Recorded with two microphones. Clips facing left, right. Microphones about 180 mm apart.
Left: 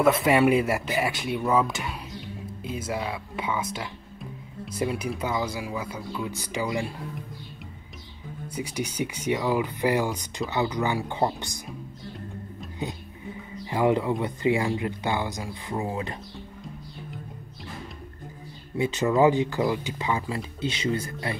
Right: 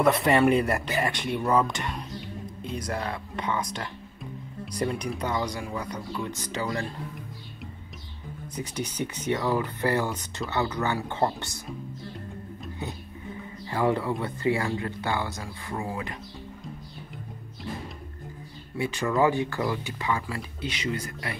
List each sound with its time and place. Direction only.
0.0 s speech: centre (ahead or behind)
8.5 s speech: 10° left (ahead or behind)
12.8 s speech: 15° left (ahead or behind)
18.8 s speech: 20° left (ahead or behind)